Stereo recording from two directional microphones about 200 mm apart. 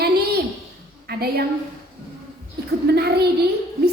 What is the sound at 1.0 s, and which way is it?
Speech, 50° right (ahead or behind).